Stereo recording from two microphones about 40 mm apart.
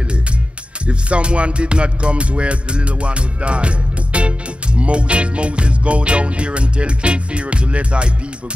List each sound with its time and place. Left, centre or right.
0.8 s music: right